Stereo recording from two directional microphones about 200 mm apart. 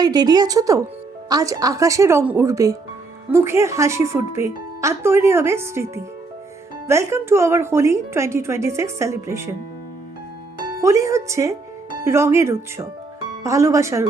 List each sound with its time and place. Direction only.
0.0 s speech: 20° right (ahead or behind)
10.8 s speech: 15° right (ahead or behind)